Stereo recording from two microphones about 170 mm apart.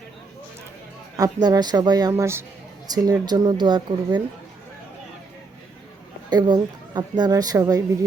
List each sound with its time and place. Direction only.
1.1 s a woman's voice: 20° right (ahead or behind)
6.3 s a woman's voice: 25° right (ahead or behind)